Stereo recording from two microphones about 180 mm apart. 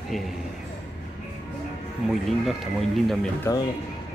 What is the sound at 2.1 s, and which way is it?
Speech, centre (ahead or behind).